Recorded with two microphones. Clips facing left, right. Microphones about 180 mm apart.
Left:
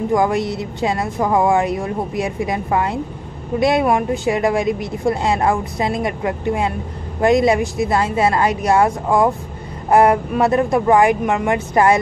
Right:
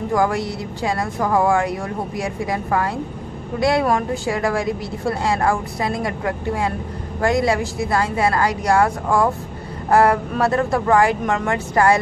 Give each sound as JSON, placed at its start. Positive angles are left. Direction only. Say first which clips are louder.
{"t": 0.1, "sound": "a woman's voice", "louder": "left 2 dB", "side_deg": 20}